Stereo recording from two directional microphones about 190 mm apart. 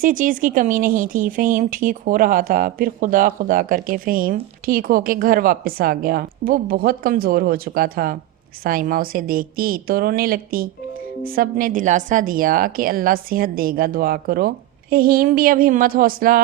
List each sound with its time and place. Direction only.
0.0 s speech: 45° right (ahead or behind)